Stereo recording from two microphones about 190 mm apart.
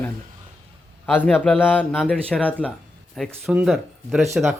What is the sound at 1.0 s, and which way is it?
A man's voice, 10° left (ahead or behind).